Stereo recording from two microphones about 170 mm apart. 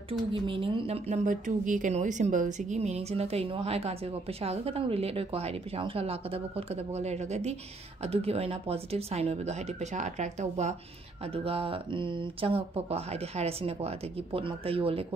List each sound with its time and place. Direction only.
0.3 s speech: 30° right (ahead or behind)